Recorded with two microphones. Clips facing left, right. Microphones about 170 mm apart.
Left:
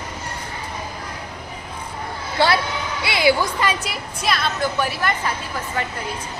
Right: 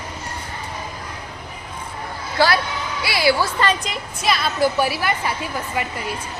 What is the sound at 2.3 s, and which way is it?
A woman's voice, 25° left (ahead or behind).